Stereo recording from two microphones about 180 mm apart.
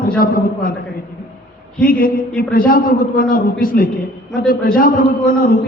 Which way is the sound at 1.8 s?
50° left (ahead or behind).